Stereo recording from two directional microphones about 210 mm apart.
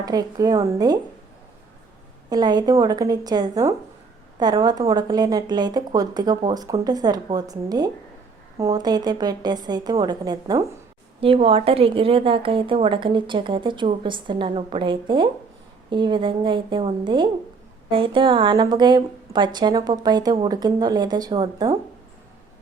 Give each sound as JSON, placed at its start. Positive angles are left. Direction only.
{"t": 0.0, "sound": "speech", "side_deg": -20}
{"t": 2.3, "sound": "a woman's voice", "side_deg": -20}